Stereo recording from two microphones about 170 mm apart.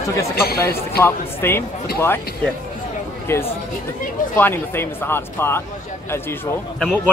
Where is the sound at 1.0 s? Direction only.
15° left (ahead or behind).